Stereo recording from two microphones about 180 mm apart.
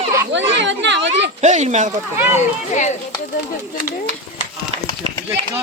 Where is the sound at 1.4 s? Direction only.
40° right (ahead or behind).